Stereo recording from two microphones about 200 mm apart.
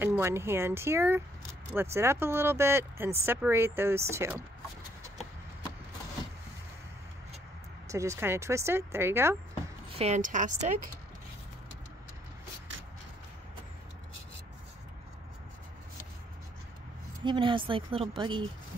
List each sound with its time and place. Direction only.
0.0 s speech: 10° right (ahead or behind)
7.9 s speech: 15° right (ahead or behind)
9.8 s a woman's voice: 30° right (ahead or behind)
17.2 s a woman's voice: 25° right (ahead or behind)